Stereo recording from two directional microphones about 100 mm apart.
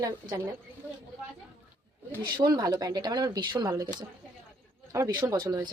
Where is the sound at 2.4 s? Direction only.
40° right (ahead or behind).